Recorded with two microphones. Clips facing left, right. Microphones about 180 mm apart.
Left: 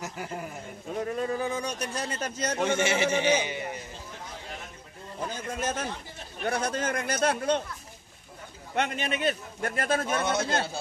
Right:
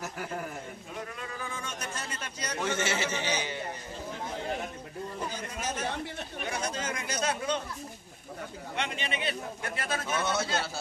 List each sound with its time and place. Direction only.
0.9 s a sound: 40° left (ahead or behind)
2.6 s a man's voice: 15° left (ahead or behind)
5.6 s a man's voice: 55° left (ahead or behind)
8.7 s a man's voice: 50° left (ahead or behind)